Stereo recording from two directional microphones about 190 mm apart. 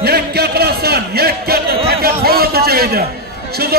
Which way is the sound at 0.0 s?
55° right (ahead or behind).